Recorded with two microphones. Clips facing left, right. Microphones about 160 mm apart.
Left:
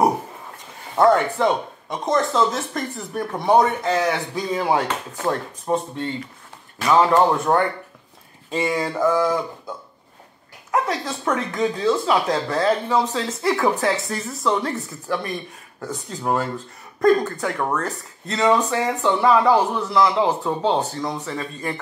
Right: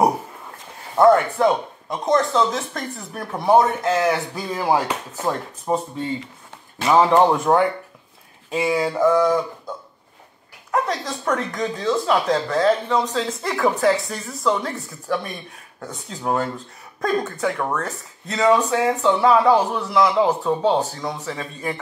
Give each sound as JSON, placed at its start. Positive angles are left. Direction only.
{"t": 0.9, "sound": "speech", "side_deg": 0}
{"t": 6.8, "sound": "speech", "side_deg": -20}
{"t": 8.5, "sound": "speech", "side_deg": -5}
{"t": 10.7, "sound": "speech", "side_deg": 5}